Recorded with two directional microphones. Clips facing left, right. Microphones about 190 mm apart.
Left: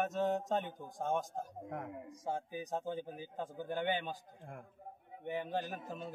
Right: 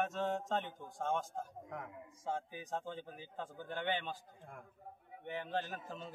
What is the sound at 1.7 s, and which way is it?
Speech, 50° left (ahead or behind).